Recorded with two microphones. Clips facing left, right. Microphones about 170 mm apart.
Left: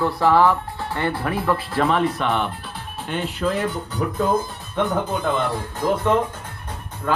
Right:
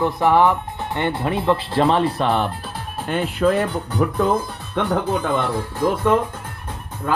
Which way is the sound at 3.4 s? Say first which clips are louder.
Right 6 dB; 55° right (ahead or behind).